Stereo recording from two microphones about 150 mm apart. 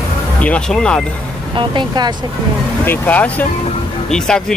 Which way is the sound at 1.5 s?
30° right (ahead or behind).